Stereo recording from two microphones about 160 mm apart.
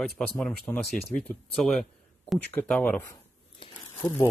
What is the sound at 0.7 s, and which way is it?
Speech, 10° left (ahead or behind).